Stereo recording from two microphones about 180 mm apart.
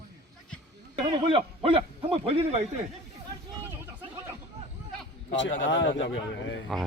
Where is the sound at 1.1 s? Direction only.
30° right (ahead or behind).